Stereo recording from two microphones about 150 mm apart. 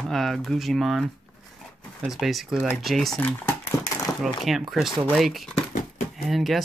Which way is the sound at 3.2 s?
15° left (ahead or behind).